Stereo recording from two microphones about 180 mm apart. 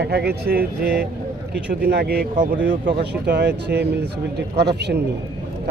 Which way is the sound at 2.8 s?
70° right (ahead or behind).